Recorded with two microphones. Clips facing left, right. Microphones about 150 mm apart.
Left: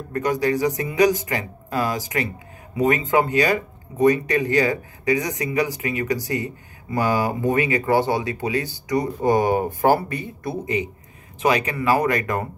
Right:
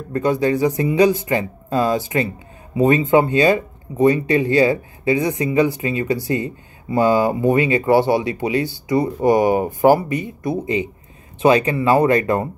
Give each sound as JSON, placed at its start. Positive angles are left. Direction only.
{"t": 0.1, "sound": "speech", "side_deg": -25}